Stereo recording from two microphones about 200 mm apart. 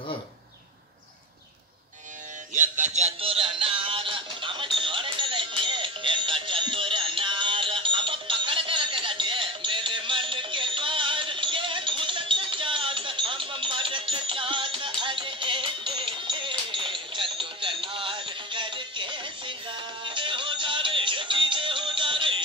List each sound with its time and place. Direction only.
2.5 s music: 40° right (ahead or behind)